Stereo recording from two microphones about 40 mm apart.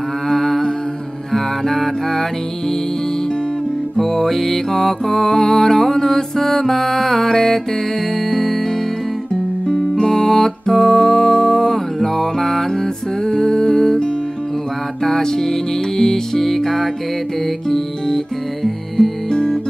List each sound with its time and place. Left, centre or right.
0.3 s humming: centre
1.3 s music: centre
3.9 s music: centre
9.9 s music: centre
13.2 s humming: centre
15.0 s music: centre
19.3 s music: centre